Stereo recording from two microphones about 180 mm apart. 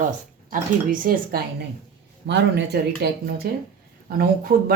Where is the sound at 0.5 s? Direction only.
50° right (ahead or behind).